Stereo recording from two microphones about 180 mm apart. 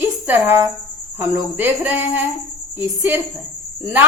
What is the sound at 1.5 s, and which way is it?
A woman's voice, 10° right (ahead or behind).